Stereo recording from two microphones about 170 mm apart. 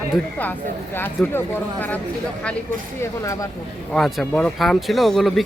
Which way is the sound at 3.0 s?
20° left (ahead or behind).